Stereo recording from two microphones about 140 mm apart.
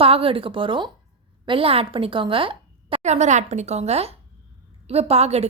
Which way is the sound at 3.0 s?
55° right (ahead or behind).